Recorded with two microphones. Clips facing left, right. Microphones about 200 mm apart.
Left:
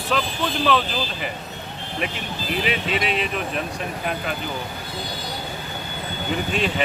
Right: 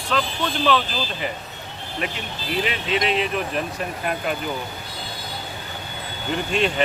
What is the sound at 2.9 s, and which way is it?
Speech, 5° left (ahead or behind).